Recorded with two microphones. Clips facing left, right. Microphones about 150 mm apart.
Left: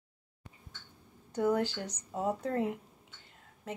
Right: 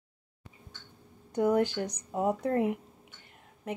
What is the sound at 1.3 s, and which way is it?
A woman's voice, 20° right (ahead or behind).